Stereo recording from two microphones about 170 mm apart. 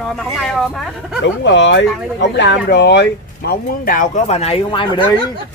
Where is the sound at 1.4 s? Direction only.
90° left; by 5.1 s 30° left (ahead or behind).